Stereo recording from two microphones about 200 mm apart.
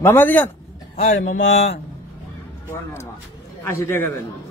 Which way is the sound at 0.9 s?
35° left (ahead or behind).